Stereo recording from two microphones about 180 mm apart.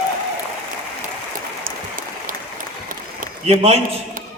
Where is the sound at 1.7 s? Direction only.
50° right (ahead or behind).